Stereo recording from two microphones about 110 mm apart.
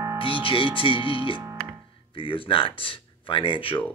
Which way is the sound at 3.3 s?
50° left (ahead or behind).